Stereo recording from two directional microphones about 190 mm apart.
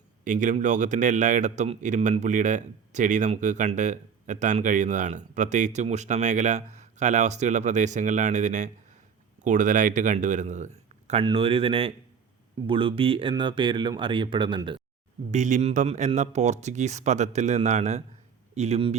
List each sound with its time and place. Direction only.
0.3 s a man's voice: 40° right (ahead or behind)
11.1 s speech: 25° right (ahead or behind)
15.3 s a man's voice: 40° right (ahead or behind)